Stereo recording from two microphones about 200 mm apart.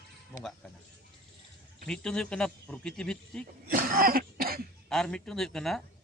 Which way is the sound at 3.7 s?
45° right (ahead or behind).